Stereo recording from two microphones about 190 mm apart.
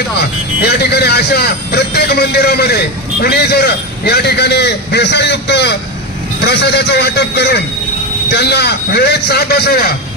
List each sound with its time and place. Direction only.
0.2 s a man's voice: 60° left (ahead or behind)